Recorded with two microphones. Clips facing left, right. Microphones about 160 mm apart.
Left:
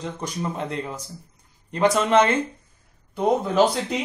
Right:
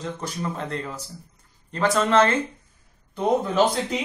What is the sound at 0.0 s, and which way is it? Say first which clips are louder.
Speech: left 1 dB; 15° left (ahead or behind).